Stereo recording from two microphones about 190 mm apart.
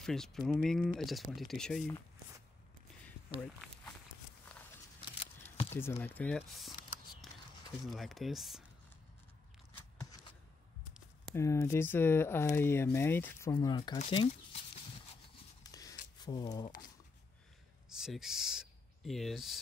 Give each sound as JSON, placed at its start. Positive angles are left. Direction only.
{"t": 0.0, "sound": "speech", "side_deg": 0}
{"t": 5.7, "sound": "speech", "side_deg": 10}
{"t": 7.2, "sound": "a sound", "side_deg": 0}
{"t": 7.8, "sound": "speech", "side_deg": 0}
{"t": 11.3, "sound": "speech", "side_deg": 15}
{"t": 15.6, "sound": "scissors", "side_deg": 20}
{"t": 16.2, "sound": "speech", "side_deg": 20}
{"t": 17.8, "sound": "speech", "side_deg": -5}